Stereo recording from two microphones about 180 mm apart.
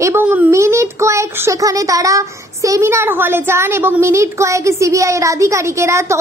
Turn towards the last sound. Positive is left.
turn(degrees=-15)  # may be behind; listen again after turning